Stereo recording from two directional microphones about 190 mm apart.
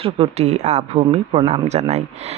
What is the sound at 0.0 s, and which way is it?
Speech, 30° right (ahead or behind).